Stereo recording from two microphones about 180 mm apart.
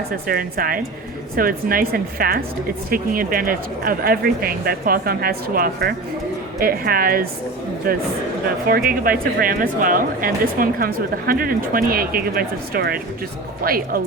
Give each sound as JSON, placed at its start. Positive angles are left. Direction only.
{"t": 0.3, "sound": "speech", "side_deg": -55}